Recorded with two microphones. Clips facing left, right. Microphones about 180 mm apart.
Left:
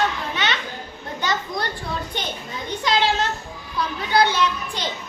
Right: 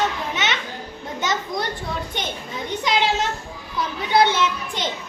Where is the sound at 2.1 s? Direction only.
20° right (ahead or behind).